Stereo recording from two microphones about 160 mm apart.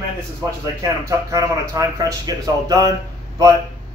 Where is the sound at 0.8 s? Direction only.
20° right (ahead or behind).